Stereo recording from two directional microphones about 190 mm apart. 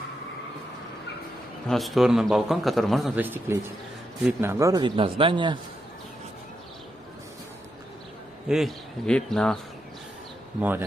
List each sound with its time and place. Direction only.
1.7 s a man's voice: centre (ahead or behind)
3.2 s a man's voice: 10° right (ahead or behind); by 5.6 s 25° right (ahead or behind)
8.5 s a man's voice: centre (ahead or behind)